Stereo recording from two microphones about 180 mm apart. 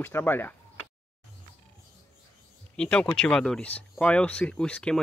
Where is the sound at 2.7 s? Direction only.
5° left (ahead or behind).